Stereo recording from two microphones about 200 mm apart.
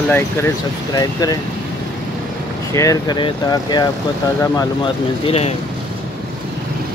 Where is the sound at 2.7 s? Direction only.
15° left (ahead or behind).